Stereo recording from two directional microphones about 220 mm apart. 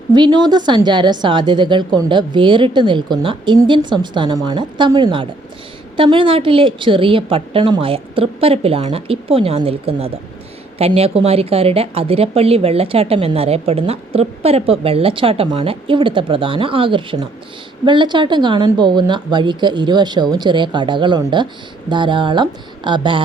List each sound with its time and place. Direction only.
0.1 s speech: 20° right (ahead or behind)